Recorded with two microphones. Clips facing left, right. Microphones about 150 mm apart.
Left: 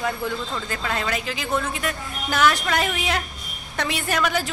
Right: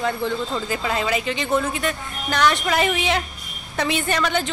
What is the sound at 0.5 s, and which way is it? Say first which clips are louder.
A woman's voice: right 4 dB; 10° right (ahead or behind).